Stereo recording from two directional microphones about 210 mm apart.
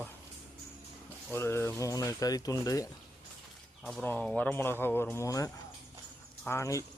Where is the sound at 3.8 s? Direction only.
5° left (ahead or behind).